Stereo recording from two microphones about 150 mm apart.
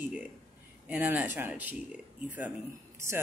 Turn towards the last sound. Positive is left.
turn(degrees=-20)  # may be behind; listen again after turning